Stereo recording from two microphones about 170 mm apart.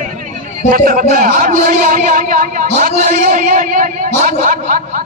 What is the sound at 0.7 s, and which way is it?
A man's voice, 55° right (ahead or behind).